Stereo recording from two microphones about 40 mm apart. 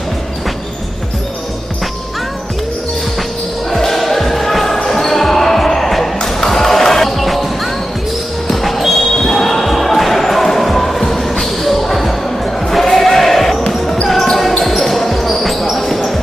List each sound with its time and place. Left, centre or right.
3.7 s basketball bounce: centre
6.2 s music: centre
8.5 s basketball bounce: centre